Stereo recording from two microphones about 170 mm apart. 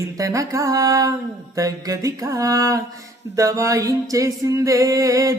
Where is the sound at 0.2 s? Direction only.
20° right (ahead or behind).